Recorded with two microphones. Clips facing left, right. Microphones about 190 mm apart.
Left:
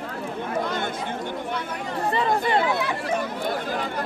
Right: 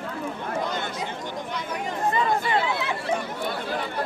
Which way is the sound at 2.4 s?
45° left (ahead or behind).